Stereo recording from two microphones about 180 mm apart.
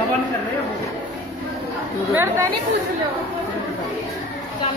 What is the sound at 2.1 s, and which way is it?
Speech, 15° right (ahead or behind).